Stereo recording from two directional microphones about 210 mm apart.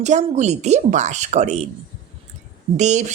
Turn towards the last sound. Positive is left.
turn(degrees=-35)  # may be behind; listen again after turning